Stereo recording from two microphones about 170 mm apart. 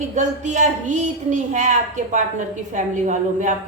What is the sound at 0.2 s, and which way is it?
A woman's voice, 45° right (ahead or behind).